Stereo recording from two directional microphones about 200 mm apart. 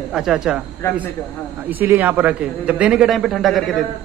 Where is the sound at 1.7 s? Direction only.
10° right (ahead or behind).